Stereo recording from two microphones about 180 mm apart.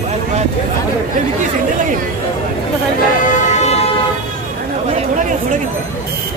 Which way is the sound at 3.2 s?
40° left (ahead or behind).